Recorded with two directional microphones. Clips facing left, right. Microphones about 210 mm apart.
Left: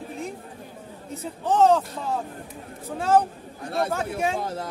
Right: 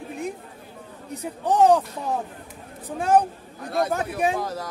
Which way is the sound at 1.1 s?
15° right (ahead or behind).